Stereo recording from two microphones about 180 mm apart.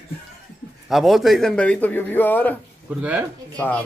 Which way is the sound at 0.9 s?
Centre (ahead or behind).